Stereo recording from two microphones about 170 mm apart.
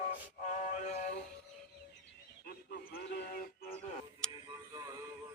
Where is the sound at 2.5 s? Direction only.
65° left (ahead or behind).